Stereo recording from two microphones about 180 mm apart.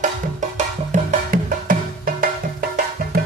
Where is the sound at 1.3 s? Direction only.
50° right (ahead or behind).